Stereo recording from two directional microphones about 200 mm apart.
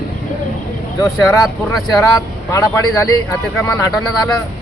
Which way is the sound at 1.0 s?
15° left (ahead or behind).